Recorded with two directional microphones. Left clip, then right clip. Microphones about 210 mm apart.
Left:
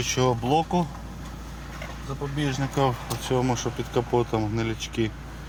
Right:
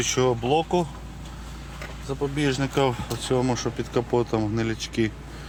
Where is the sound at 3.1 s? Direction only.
10° right (ahead or behind).